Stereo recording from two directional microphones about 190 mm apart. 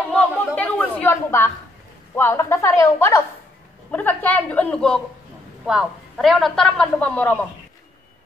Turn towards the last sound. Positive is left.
turn(degrees=10)  # may be behind; listen again after turning